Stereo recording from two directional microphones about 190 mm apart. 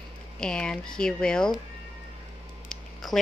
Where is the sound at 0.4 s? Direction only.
5° left (ahead or behind).